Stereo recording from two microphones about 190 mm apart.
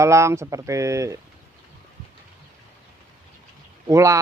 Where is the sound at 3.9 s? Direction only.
15° right (ahead or behind).